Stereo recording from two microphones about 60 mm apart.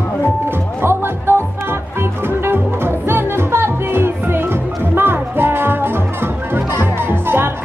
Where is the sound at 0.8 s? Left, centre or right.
Right.